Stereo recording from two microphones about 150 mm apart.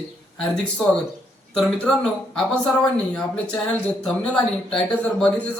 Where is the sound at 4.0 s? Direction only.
5° left (ahead or behind).